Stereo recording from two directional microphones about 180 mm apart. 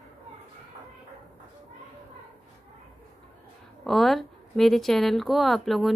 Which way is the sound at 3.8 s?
Centre (ahead or behind).